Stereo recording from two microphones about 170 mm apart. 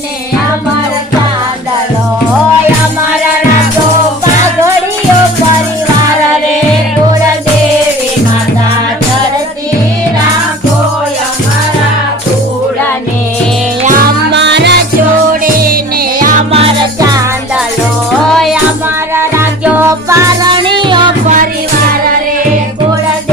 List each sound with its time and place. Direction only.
14.3 s music: 90° right
15.3 s music: 55° right (ahead or behind)
18.3 s music: centre (ahead or behind)
19.1 s music: 15° right (ahead or behind)
20.6 s music: 30° right (ahead or behind)